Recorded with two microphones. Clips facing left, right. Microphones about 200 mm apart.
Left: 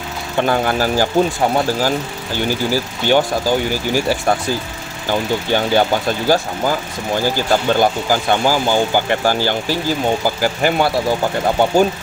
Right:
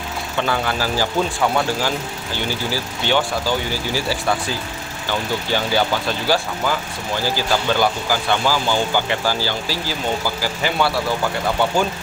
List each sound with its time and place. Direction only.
0.4 s speech: 45° left (ahead or behind)
1.4 s speech: 35° left (ahead or behind)
5.5 s speech: 50° left (ahead or behind)